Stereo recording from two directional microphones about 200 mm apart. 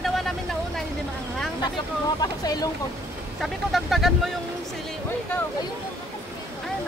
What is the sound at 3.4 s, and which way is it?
Speech, centre (ahead or behind).